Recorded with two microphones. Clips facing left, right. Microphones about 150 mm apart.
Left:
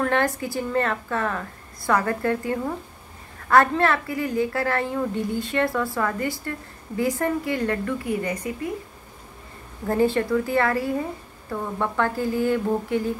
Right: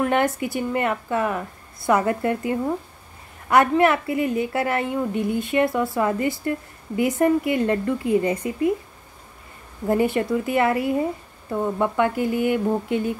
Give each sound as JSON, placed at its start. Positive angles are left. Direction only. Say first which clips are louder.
{"t": 0.0, "sound": "a woman's voice", "louder": "right 2 dB", "side_deg": -20}
{"t": 9.8, "sound": "a woman's voice", "louder": "right 1 dB", "side_deg": -15}